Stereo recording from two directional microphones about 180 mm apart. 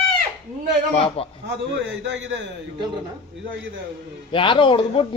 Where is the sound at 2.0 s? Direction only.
90° right.